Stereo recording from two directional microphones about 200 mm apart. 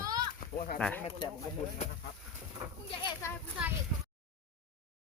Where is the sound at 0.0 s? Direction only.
20° right (ahead or behind).